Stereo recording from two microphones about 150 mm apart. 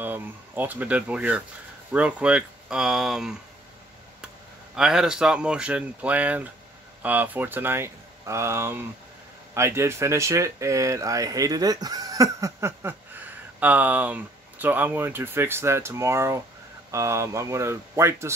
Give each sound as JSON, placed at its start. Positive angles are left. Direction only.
{"t": 0.0, "sound": "speech", "side_deg": -15}
{"t": 4.7, "sound": "speech", "side_deg": -5}